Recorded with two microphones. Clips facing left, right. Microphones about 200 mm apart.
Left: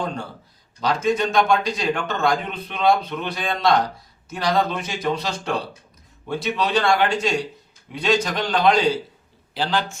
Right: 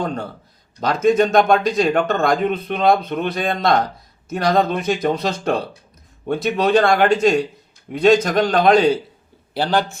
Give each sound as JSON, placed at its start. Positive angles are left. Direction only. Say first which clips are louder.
{"t": 0.8, "sound": "speech", "louder": "right 5 dB", "side_deg": -50}